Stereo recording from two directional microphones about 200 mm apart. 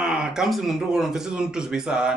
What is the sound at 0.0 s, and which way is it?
Speech, 5° right (ahead or behind).